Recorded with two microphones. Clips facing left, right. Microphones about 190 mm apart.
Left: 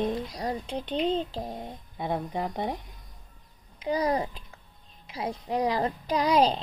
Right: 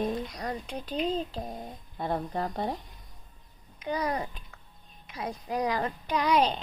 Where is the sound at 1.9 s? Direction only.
10° left (ahead or behind).